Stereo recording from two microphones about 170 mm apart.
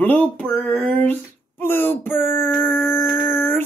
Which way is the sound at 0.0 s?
10° left (ahead or behind).